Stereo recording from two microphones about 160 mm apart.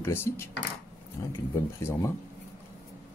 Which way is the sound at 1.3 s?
15° left (ahead or behind).